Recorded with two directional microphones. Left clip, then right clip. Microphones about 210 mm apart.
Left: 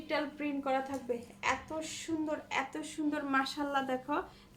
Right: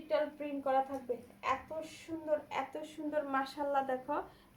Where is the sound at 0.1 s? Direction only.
35° left (ahead or behind).